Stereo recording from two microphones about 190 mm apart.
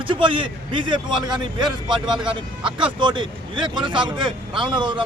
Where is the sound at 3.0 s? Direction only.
25° right (ahead or behind).